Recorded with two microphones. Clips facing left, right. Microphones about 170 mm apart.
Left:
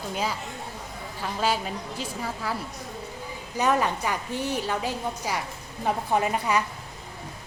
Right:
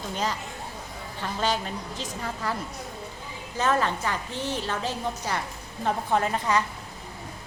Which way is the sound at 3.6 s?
15° left (ahead or behind).